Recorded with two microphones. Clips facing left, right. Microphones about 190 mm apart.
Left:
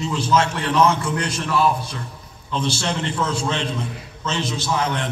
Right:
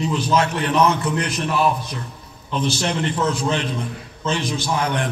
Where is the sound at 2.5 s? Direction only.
25° left (ahead or behind).